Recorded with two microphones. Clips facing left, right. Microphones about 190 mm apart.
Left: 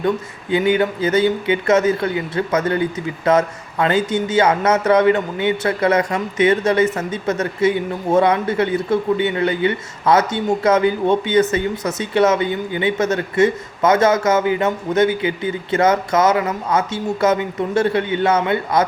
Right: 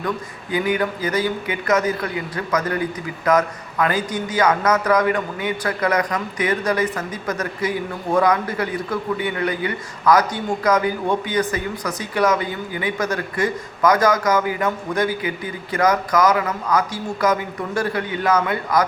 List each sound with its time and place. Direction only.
0.5 s a man's voice: 25° left (ahead or behind)